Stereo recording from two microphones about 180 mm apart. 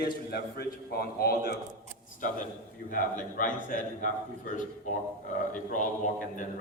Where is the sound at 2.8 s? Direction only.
45° left (ahead or behind).